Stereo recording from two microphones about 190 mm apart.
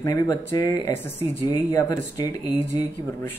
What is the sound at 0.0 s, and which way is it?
Speech, 20° left (ahead or behind).